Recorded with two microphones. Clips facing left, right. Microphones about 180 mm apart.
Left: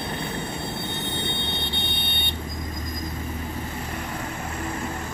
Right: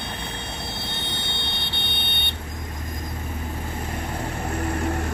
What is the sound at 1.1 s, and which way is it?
Vehicle, 80° right.